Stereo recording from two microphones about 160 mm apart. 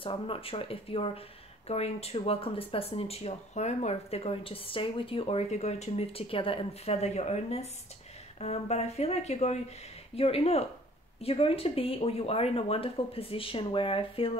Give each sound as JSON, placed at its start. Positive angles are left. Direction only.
{"t": 0.0, "sound": "speech", "side_deg": 35}